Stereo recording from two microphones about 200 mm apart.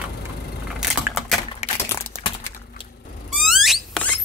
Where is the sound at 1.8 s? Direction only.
10° left (ahead or behind).